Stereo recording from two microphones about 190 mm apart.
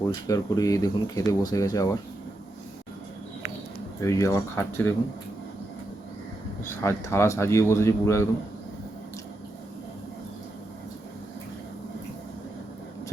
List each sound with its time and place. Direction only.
0.1 s speech: 20° left (ahead or behind)
4.0 s speech: 15° left (ahead or behind)
6.8 s speech: 15° left (ahead or behind)